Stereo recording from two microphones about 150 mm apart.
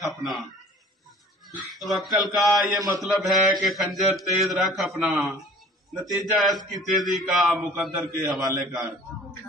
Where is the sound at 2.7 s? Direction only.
25° right (ahead or behind).